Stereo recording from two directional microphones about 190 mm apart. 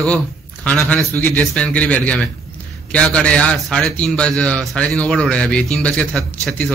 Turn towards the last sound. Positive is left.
turn(degrees=0)  # may be behind; listen again after turning